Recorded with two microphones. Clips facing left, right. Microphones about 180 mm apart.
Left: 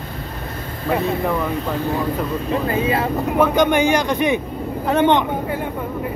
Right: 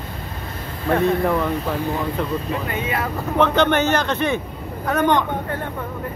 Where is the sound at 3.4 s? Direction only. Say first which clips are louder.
Left 1 dB; 10° left (ahead or behind).